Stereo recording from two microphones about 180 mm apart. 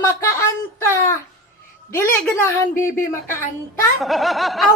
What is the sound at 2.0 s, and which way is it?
Speech, 10° left (ahead or behind).